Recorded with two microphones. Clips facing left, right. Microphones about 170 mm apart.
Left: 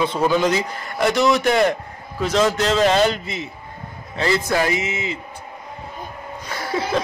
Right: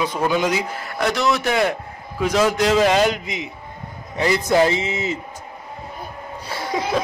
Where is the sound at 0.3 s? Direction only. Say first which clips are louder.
Left 2 dB; 10° right (ahead or behind); by 5.2 s 40° right (ahead or behind).